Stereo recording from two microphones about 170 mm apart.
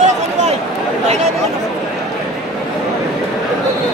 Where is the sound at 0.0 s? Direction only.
40° right (ahead or behind).